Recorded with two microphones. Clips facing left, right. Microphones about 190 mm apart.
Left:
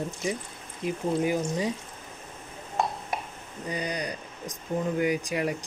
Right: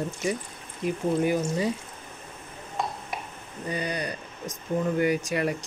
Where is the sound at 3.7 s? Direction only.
15° left (ahead or behind).